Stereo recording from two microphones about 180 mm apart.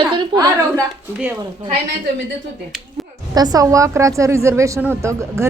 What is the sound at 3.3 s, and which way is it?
A woman's voice, 20° right (ahead or behind).